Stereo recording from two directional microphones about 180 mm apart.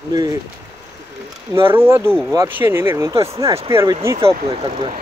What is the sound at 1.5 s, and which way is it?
Speech, 15° right (ahead or behind).